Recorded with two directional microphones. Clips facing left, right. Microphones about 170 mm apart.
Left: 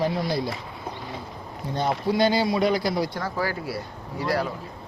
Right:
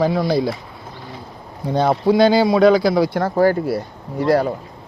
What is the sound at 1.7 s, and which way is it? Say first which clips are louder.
Speech: right 9 dB; 90° right.